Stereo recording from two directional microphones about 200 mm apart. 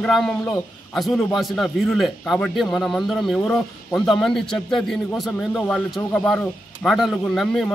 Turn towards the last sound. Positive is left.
turn(degrees=0)  # may be behind; listen again after turning